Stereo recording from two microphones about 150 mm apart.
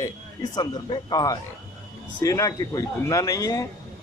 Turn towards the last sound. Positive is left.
turn(degrees=20)  # may be behind; listen again after turning